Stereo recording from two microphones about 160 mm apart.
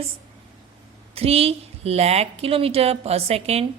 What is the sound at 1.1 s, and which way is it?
A woman's voice, 40° right (ahead or behind).